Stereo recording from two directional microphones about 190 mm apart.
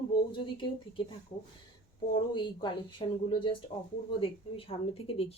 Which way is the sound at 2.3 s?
25° left (ahead or behind).